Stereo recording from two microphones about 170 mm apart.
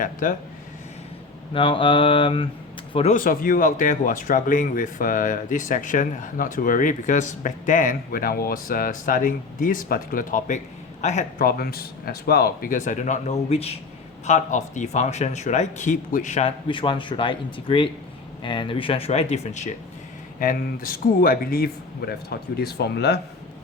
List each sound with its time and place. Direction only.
0.0 s speech: 55° left (ahead or behind)
1.5 s speech: 30° left (ahead or behind)
3.2 s speech: 55° left (ahead or behind)
11.4 s speech: 60° left (ahead or behind); by 16.5 s 45° left (ahead or behind)
16.6 s speech: 30° left (ahead or behind)
20.4 s speech: 55° left (ahead or behind); by 23.2 s 75° left (ahead or behind)